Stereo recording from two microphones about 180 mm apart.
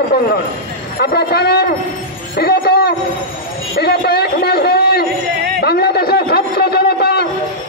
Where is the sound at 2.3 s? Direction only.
60° left (ahead or behind).